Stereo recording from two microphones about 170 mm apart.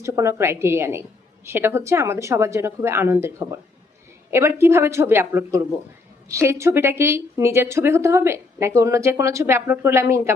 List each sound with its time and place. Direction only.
0.0 s a woman's voice: 15° right (ahead or behind)